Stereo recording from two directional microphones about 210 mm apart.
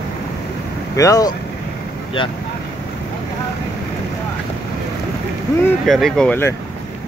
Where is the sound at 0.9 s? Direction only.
15° left (ahead or behind).